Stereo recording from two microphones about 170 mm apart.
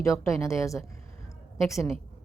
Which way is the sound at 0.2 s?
15° left (ahead or behind).